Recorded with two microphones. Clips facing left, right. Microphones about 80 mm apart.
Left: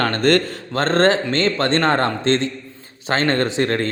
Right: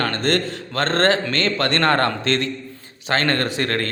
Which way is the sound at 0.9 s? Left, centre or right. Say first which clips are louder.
Left 3 dB; left.